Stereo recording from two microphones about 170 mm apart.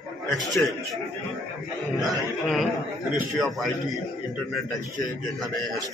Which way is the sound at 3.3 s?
Centre (ahead or behind).